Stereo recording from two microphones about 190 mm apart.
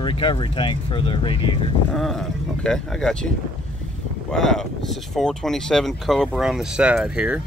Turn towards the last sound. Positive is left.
turn(degrees=-5)  # may be behind; listen again after turning